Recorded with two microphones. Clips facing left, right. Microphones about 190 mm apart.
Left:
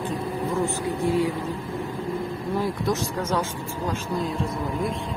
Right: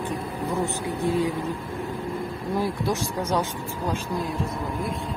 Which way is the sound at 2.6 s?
10° right (ahead or behind).